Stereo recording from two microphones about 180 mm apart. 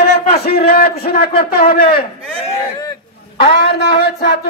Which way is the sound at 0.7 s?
55° left (ahead or behind).